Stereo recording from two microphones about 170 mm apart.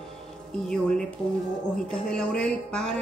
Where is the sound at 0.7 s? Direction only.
5° left (ahead or behind).